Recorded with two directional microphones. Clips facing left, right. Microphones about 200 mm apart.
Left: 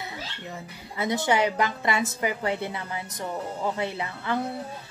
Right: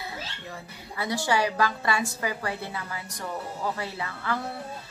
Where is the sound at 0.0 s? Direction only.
20° left (ahead or behind).